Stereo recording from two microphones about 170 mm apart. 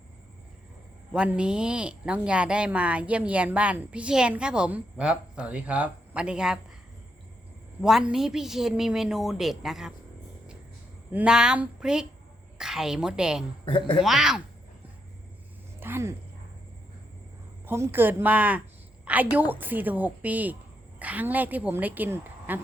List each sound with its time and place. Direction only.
1.1 s speech: 5° right (ahead or behind)
7.8 s a woman's voice: centre (ahead or behind)
11.1 s a woman's voice: 5° right (ahead or behind)
13.7 s speech: 30° left (ahead or behind)
14.0 s a woman's voice: centre (ahead or behind)
15.8 s speech: 15° right (ahead or behind)
17.7 s speech: 15° right (ahead or behind)